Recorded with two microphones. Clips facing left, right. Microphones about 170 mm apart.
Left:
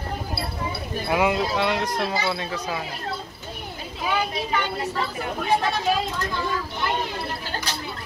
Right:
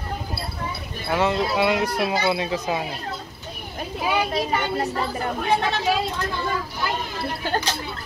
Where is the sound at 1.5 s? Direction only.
5° right (ahead or behind).